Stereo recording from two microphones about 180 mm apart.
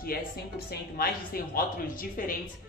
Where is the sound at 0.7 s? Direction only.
55° left (ahead or behind).